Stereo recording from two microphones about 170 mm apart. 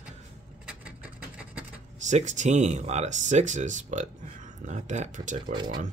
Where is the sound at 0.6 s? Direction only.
5° right (ahead or behind).